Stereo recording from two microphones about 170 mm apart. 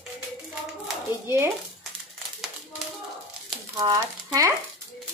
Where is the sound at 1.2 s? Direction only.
15° right (ahead or behind).